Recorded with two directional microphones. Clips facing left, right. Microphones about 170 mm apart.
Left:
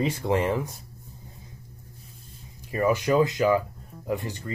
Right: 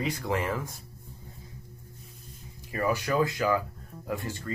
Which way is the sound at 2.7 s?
20° left (ahead or behind).